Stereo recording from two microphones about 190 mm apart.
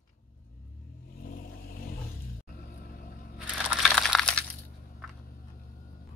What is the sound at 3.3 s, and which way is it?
Crushing, 5° right (ahead or behind).